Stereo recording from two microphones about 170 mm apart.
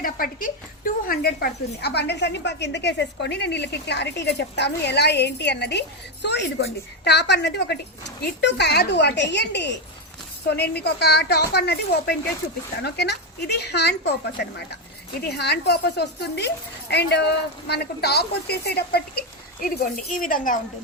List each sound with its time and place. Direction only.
0.0 s a woman's voice: 55° left (ahead or behind); by 9.8 s 90° left
10.4 s a woman's voice: 75° left (ahead or behind)
19.6 s speech: 55° left (ahead or behind)